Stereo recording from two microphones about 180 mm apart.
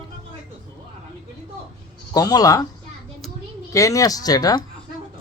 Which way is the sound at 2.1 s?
20° left (ahead or behind).